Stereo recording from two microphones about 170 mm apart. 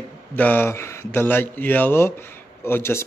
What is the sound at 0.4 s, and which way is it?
A man's voice, 10° left (ahead or behind).